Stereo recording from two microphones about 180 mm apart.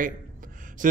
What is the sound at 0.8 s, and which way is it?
Mantra, 45° right (ahead or behind).